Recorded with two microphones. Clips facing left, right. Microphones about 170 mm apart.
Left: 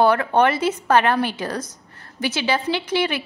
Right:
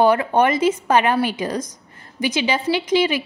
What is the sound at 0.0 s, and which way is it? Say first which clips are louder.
A woman's voice: right 1 dB; 10° right (ahead or behind).